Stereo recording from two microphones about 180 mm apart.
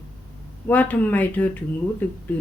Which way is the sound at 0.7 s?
10° left (ahead or behind).